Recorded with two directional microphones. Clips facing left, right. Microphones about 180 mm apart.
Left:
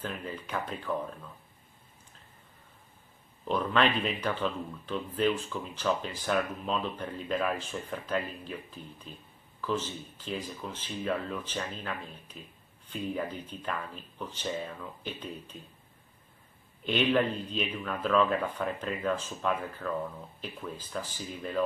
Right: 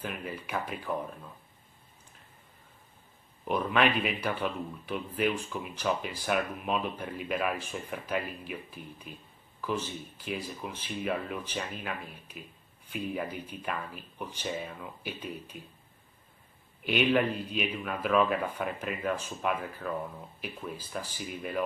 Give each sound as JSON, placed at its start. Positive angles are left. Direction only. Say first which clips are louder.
{"t": 0.0, "sound": "speech", "louder": "even", "side_deg": -10}
{"t": 3.4, "sound": "speech", "louder": "even", "side_deg": -10}
{"t": 16.8, "sound": "speech", "louder": "even", "side_deg": -10}